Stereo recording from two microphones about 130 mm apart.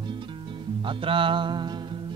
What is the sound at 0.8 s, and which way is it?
Speech, 40° right (ahead or behind).